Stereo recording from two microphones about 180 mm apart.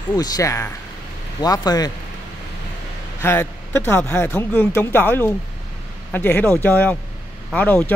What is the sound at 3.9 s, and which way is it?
Speech, 10° left (ahead or behind).